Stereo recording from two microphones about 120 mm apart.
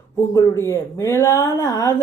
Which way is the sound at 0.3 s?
20° left (ahead or behind).